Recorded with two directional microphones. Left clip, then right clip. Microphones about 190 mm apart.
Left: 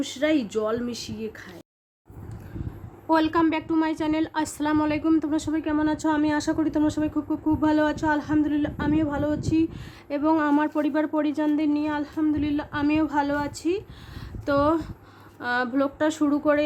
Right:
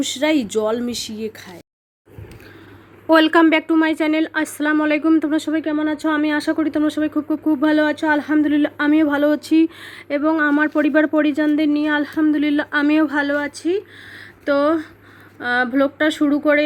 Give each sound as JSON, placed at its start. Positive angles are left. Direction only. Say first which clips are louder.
{"t": 0.0, "sound": "a woman's voice", "louder": "right 5 dB", "side_deg": -20}
{"t": 3.1, "sound": "a woman's voice", "louder": "right 9 dB", "side_deg": -15}
{"t": 10.1, "sound": "speech", "louder": "right 5 dB", "side_deg": 0}
{"t": 10.8, "sound": "a woman's voice", "louder": "right 8 dB", "side_deg": -10}